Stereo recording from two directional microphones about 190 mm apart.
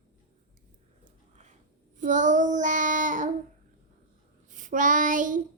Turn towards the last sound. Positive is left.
turn(degrees=-45)  # may be behind; listen again after turning